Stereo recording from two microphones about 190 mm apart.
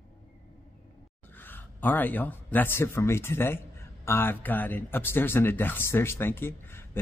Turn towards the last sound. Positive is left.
turn(degrees=10)  # may be behind; listen again after turning